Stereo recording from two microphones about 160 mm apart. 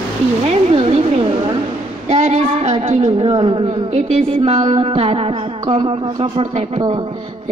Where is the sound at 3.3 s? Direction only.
35° right (ahead or behind).